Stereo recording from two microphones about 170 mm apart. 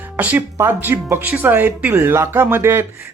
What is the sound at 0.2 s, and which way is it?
Speech, 10° right (ahead or behind).